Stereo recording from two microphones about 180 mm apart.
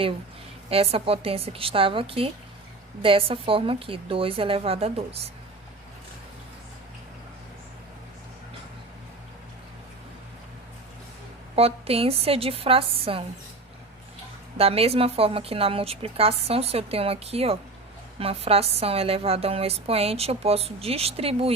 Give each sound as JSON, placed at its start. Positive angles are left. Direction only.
{"t": 0.7, "sound": "a woman's voice", "side_deg": -35}
{"t": 11.5, "sound": "a woman's voice", "side_deg": -35}
{"t": 14.6, "sound": "a woman's voice", "side_deg": -35}